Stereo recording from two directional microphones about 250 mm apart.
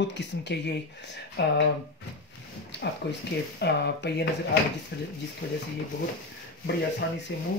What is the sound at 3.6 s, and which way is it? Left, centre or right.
Speech, left.